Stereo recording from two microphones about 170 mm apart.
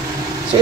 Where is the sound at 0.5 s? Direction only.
25° right (ahead or behind).